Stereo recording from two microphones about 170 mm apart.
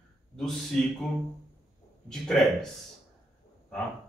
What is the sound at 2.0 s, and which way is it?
Speech, centre (ahead or behind).